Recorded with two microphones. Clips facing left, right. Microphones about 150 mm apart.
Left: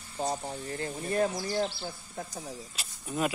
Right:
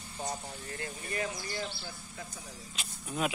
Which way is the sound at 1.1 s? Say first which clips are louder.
Left 9 dB; 70° left (ahead or behind).